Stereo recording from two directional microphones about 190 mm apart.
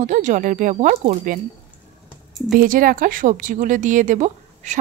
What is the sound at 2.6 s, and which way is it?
A woman's voice, 45° right (ahead or behind).